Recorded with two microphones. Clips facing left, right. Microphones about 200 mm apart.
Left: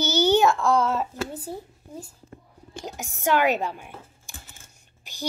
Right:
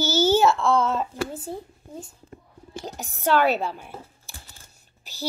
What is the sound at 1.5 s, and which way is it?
Speech, 30° right (ahead or behind).